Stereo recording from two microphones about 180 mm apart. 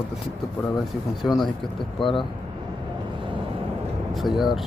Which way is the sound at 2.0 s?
25° left (ahead or behind).